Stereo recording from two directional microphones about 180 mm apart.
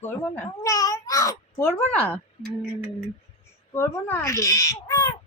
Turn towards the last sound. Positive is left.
turn(degrees=15)  # may be behind; listen again after turning